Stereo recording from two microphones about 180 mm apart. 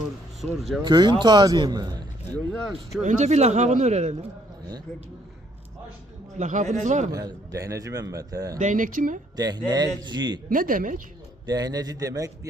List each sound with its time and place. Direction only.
0.4 s speech: centre (ahead or behind)
0.9 s speech: 25° right (ahead or behind)
2.3 s speech: centre (ahead or behind)
3.0 s speech: 40° right (ahead or behind)
6.4 s speech: 45° right (ahead or behind)
7.1 s speech: 20° right (ahead or behind)
8.5 s speech: 45° right (ahead or behind)
9.3 s speech: 20° right (ahead or behind)
10.5 s speech: 50° right (ahead or behind)
11.4 s speech: 20° right (ahead or behind)